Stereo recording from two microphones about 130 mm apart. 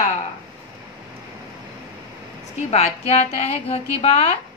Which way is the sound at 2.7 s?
55° left (ahead or behind).